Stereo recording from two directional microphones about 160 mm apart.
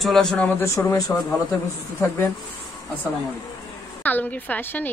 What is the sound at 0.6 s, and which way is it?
Speech, 15° left (ahead or behind).